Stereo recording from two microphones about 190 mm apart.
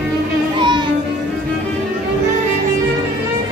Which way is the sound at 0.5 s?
25° right (ahead or behind).